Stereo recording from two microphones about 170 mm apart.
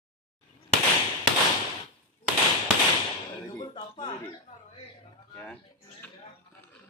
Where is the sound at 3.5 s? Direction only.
30° left (ahead or behind).